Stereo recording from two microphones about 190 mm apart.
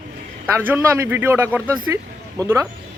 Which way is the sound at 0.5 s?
10° right (ahead or behind).